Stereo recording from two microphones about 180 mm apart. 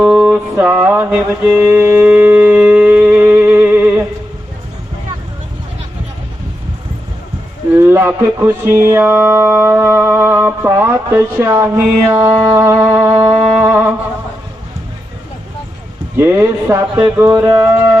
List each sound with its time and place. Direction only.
0.0 s music: 5° right (ahead or behind)
7.8 s speech: 15° right (ahead or behind)
8.9 s mantra: 10° right (ahead or behind)
16.1 s mantra: 10° right (ahead or behind)
17.2 s music: 15° right (ahead or behind)